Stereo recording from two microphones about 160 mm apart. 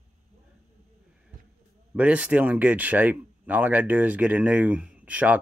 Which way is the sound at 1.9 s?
10° right (ahead or behind).